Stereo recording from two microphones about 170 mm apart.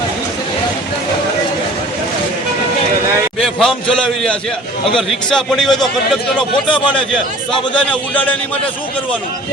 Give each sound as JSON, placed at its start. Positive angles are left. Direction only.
{"t": 3.4, "sound": "a man's voice", "side_deg": 5}
{"t": 6.7, "sound": "a man's voice", "side_deg": 30}
{"t": 7.5, "sound": "a man's voice", "side_deg": 5}